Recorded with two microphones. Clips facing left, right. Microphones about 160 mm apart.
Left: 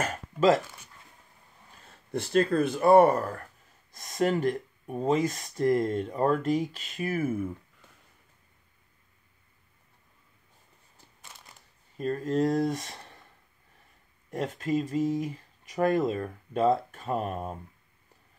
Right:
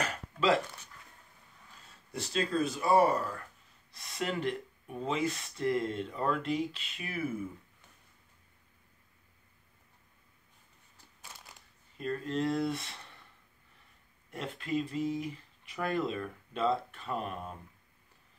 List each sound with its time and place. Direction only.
0.0 s speech: 45° left (ahead or behind)
1.9 s speech: 55° left (ahead or behind)
11.2 s crushing: centre (ahead or behind)
12.0 s speech: 40° left (ahead or behind)
14.3 s speech: 45° left (ahead or behind)